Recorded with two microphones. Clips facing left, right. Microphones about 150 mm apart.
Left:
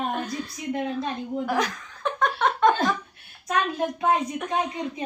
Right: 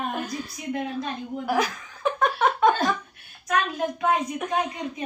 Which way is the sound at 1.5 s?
5° right (ahead or behind).